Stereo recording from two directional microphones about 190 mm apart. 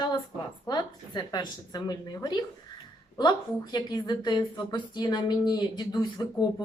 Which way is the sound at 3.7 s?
20° left (ahead or behind).